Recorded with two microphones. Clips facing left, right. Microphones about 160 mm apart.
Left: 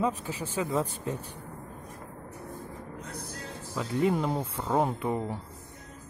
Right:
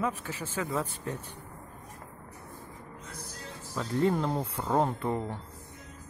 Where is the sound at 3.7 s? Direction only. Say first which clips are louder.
Even; 10° left (ahead or behind).